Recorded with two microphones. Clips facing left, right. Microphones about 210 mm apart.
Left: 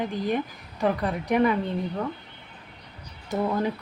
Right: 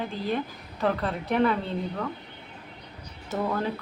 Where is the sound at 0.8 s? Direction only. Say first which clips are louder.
Left 2 dB; 15° left (ahead or behind).